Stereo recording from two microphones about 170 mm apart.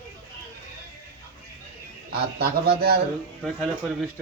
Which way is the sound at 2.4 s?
70° right (ahead or behind).